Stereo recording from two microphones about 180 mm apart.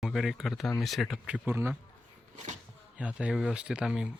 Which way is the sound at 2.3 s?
40° right (ahead or behind).